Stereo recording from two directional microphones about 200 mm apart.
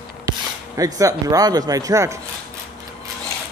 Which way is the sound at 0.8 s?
15° right (ahead or behind).